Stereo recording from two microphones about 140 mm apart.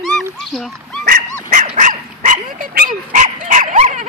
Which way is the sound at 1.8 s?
70° right (ahead or behind).